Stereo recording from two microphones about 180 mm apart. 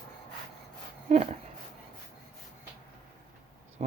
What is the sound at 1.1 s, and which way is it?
Speech, 35° right (ahead or behind).